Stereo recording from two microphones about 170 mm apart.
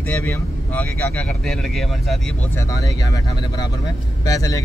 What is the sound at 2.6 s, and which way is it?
Speech, 20° left (ahead or behind).